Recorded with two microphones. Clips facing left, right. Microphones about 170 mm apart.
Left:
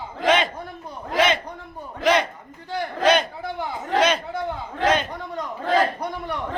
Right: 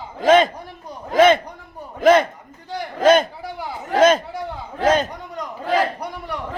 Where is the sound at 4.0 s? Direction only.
45° right (ahead or behind).